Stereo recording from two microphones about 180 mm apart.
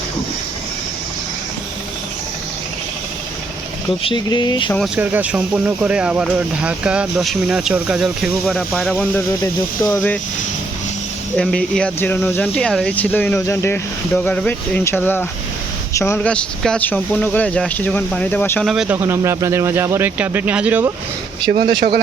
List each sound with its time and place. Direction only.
4.0 s speech: 25° left (ahead or behind)
4.9 s speech: 10° right (ahead or behind)
9.4 s speech: 15° left (ahead or behind)
11.3 s speech: 5° left (ahead or behind)
18.6 s speech: centre (ahead or behind)
21.7 s speech: 25° right (ahead or behind)